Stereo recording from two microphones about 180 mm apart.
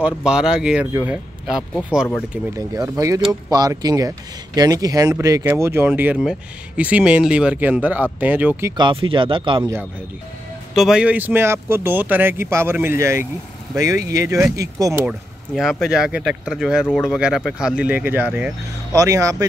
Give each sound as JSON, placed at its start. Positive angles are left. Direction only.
{"t": 0.0, "sound": "speech", "side_deg": -5}
{"t": 2.5, "sound": "speech", "side_deg": -20}
{"t": 8.7, "sound": "speech", "side_deg": -25}
{"t": 10.7, "sound": "speech", "side_deg": 0}
{"t": 15.0, "sound": "speech", "side_deg": 0}